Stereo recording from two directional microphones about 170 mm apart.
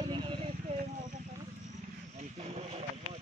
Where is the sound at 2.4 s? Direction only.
40° right (ahead or behind).